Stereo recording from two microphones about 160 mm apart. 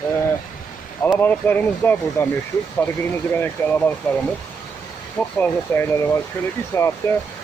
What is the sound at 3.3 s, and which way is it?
Speech, 10° left (ahead or behind).